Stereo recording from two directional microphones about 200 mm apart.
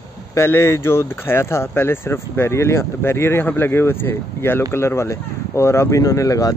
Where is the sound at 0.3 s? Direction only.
10° left (ahead or behind).